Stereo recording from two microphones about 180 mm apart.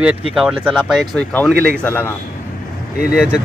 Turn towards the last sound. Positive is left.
turn(degrees=-5)  # may be behind; listen again after turning